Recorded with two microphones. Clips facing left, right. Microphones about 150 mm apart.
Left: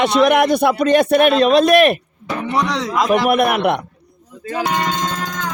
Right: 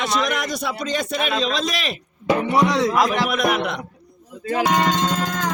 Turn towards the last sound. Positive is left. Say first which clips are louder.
# left 6 dB
turn(degrees=60)  # may be behind; listen again after turning